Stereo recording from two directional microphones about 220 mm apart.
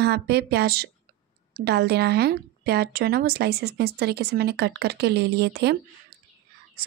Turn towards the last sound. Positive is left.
turn(degrees=-50)  # may be behind; listen again after turning